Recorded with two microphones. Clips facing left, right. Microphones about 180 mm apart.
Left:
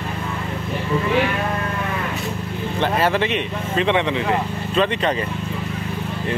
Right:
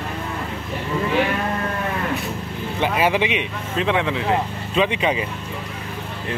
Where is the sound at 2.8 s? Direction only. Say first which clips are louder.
Even; 10° right (ahead or behind).